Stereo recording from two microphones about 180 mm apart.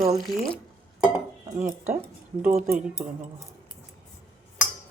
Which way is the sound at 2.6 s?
50° right (ahead or behind).